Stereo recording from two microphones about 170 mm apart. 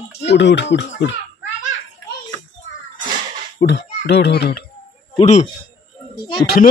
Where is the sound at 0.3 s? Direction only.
90° left.